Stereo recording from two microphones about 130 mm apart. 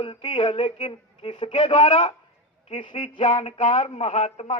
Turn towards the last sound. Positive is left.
turn(degrees=55)  # may be behind; listen again after turning